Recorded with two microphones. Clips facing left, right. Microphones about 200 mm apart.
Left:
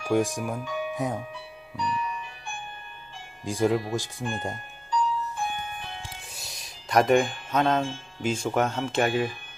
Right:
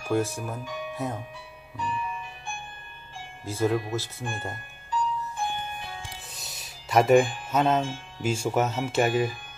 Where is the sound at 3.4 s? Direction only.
15° left (ahead or behind).